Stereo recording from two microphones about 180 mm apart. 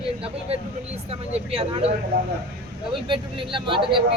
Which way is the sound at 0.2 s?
35° right (ahead or behind).